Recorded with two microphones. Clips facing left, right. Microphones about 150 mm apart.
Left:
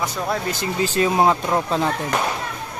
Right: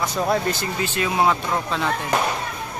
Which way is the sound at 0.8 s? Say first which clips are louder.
Left 3 dB; 35° left (ahead or behind).